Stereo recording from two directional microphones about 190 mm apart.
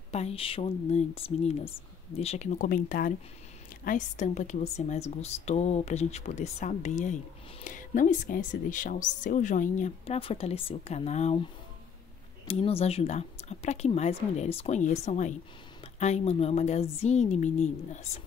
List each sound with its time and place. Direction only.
0.1 s a woman's voice: 35° left (ahead or behind)
12.4 s a woman's voice: 30° left (ahead or behind)